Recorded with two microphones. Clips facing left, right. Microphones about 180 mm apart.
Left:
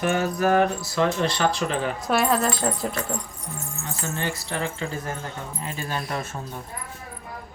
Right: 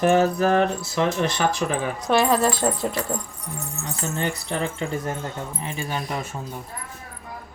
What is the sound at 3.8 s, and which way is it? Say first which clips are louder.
Speech: right 2 dB; 20° right (ahead or behind).